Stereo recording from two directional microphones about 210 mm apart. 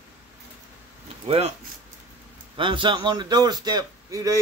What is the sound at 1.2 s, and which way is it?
Speech, 30° right (ahead or behind).